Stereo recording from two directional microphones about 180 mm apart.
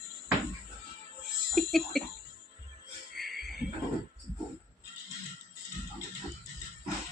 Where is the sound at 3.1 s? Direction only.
Centre (ahead or behind).